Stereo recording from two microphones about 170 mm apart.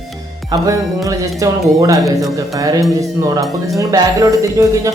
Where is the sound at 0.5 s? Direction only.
20° right (ahead or behind).